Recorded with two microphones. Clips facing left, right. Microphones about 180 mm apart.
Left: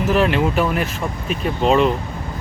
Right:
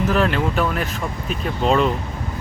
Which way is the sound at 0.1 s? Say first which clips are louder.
Left 2 dB; 10° left (ahead or behind).